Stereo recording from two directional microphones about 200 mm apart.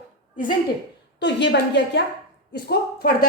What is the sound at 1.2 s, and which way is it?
A woman's voice, 60° left (ahead or behind).